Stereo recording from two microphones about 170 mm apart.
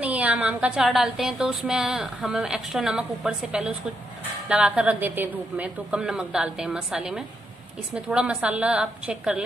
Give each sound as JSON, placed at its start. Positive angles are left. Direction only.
{"t": 0.0, "sound": "a woman's voice", "side_deg": -10}